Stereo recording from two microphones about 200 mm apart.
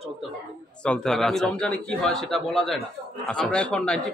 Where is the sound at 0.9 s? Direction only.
Centre (ahead or behind).